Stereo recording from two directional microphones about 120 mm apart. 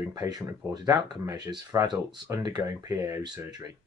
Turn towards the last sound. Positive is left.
turn(degrees=-30)  # may be behind; listen again after turning